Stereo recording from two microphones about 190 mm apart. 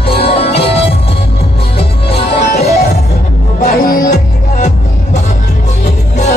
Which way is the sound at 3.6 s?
50° left (ahead or behind).